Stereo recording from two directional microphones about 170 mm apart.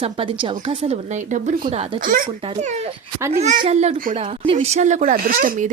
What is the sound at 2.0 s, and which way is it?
A woman's voice, 55° right (ahead or behind).